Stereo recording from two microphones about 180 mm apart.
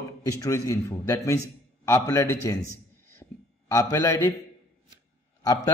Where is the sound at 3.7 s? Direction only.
15° left (ahead or behind).